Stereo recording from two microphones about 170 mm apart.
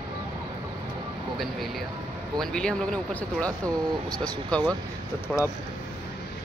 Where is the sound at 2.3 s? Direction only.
5° left (ahead or behind).